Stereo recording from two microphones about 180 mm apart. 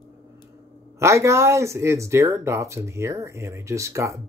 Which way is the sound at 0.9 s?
15° right (ahead or behind).